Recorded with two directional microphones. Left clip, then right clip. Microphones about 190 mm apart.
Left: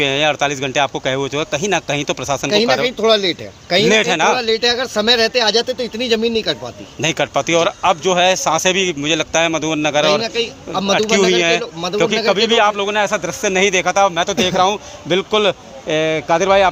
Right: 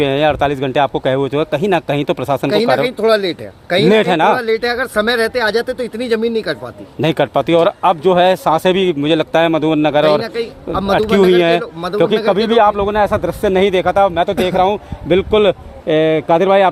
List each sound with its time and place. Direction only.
0.0 s speech: 55° right (ahead or behind)
2.5 s speech: 15° right (ahead or behind)
3.8 s speech: 60° right (ahead or behind)
4.4 s speech: 10° right (ahead or behind)
7.0 s speech: 60° right (ahead or behind)
10.1 s speech: 15° right (ahead or behind)
11.3 s speech: 60° right (ahead or behind)
11.6 s speech: 10° right (ahead or behind)
11.9 s speech: 60° right (ahead or behind)